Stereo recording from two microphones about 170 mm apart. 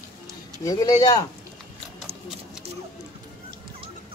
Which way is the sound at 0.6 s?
20° left (ahead or behind).